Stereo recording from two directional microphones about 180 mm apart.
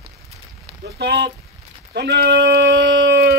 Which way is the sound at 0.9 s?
65° right (ahead or behind).